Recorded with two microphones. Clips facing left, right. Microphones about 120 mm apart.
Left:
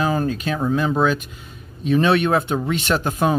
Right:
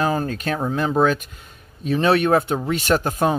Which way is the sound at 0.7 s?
35° right (ahead or behind).